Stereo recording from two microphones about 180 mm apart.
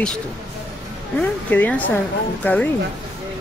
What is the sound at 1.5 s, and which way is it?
Speech, 10° left (ahead or behind).